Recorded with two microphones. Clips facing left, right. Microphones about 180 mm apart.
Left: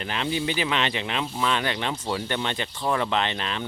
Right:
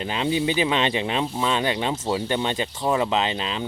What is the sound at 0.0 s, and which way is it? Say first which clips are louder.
Speech: right 4 dB; 20° right (ahead or behind).